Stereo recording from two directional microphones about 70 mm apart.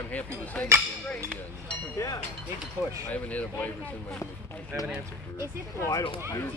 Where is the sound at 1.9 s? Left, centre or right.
Left.